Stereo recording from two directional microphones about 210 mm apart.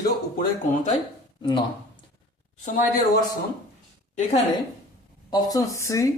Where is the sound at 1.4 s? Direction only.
20° left (ahead or behind).